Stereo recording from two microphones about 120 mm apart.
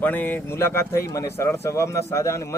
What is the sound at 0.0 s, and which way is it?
Speech, 15° left (ahead or behind).